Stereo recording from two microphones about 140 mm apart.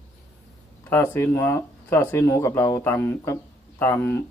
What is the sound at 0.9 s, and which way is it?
Speech, 15° left (ahead or behind).